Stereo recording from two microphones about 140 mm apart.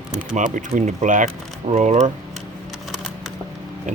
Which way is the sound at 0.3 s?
60° right (ahead or behind).